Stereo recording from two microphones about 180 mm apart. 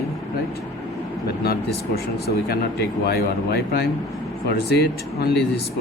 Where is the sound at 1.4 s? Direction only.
60° left (ahead or behind).